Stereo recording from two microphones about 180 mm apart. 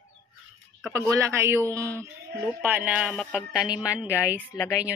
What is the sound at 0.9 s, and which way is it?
A woman's voice, 15° right (ahead or behind).